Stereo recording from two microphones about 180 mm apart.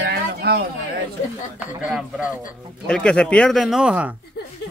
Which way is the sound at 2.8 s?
5° left (ahead or behind).